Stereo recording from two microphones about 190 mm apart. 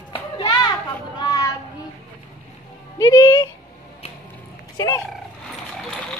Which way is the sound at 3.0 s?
20° left (ahead or behind).